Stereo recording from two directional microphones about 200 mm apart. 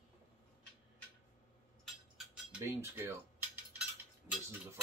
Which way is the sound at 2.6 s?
10° right (ahead or behind).